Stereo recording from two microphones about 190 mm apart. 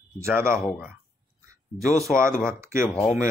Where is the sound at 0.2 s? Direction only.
15° right (ahead or behind).